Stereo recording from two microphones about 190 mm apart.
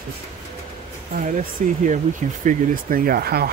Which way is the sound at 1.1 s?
40° right (ahead or behind).